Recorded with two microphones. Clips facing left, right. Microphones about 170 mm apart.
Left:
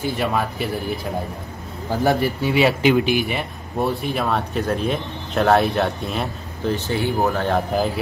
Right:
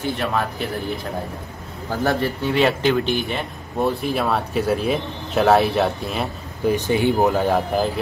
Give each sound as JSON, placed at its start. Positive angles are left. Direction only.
{"t": 0.2, "sound": "speech", "side_deg": 5}
{"t": 2.0, "sound": "speech", "side_deg": 10}
{"t": 6.7, "sound": "speech", "side_deg": -15}
{"t": 7.4, "sound": "speech", "side_deg": 0}